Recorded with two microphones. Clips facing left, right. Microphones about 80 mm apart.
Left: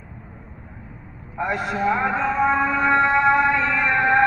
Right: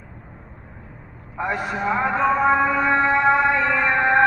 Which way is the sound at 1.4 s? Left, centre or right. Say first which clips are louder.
Left 1 dB; centre.